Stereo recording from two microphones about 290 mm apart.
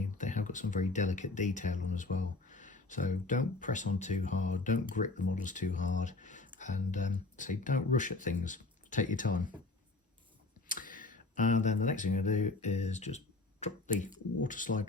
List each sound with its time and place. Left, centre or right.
0.2 s speech: left
10.7 s speech: left